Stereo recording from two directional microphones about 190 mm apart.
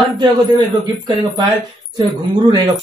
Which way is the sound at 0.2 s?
20° right (ahead or behind).